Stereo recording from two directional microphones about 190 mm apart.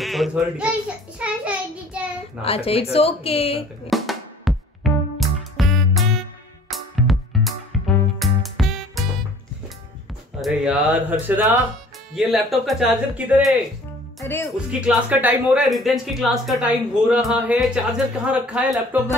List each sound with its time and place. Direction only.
0.0 s a child's voice: centre (ahead or behind)
1.2 s child singing: 5° right (ahead or behind)
2.4 s speech: 30° left (ahead or behind)
3.9 s drum: centre (ahead or behind)
4.8 s music: centre (ahead or behind)
10.4 s speech: 5° right (ahead or behind)
14.2 s speech: 15° left (ahead or behind)
14.7 s speech: 5° right (ahead or behind)